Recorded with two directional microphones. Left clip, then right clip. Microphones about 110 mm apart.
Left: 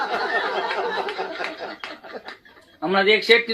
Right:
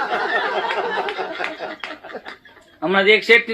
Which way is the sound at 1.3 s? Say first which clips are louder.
Right 3 dB; 30° right (ahead or behind).